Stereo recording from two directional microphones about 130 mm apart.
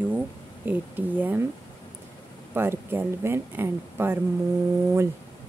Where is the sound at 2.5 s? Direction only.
15° right (ahead or behind).